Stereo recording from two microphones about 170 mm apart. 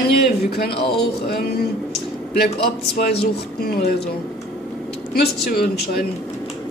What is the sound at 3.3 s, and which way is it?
Speech, 70° left (ahead or behind).